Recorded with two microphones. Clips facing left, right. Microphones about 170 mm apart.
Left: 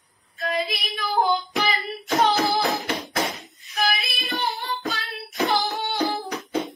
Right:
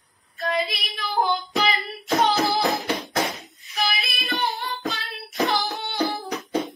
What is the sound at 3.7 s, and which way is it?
Child singing, centre (ahead or behind).